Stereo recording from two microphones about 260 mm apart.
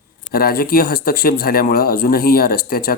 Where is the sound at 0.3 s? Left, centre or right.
Left.